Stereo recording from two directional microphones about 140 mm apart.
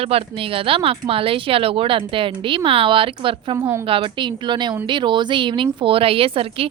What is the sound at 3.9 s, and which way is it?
A woman's voice, 40° right (ahead or behind).